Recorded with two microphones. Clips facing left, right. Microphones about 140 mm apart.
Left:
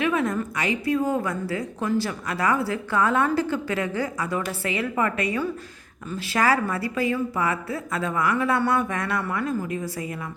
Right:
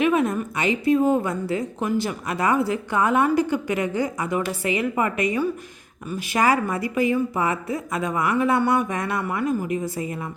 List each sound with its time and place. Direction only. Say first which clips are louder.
0.0 s a woman's voice: right 3 dB; 20° right (ahead or behind)